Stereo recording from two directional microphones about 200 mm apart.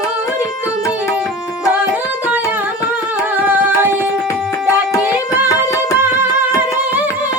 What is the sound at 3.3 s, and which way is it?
Music, 10° right (ahead or behind).